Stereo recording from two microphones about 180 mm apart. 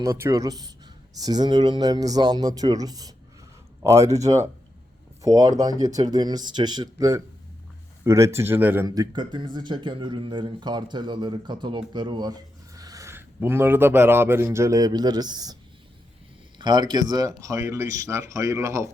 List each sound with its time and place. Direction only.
0.0 s speech: 15° right (ahead or behind)
9.1 s speech: 25° right (ahead or behind)
16.6 s speech: 25° right (ahead or behind)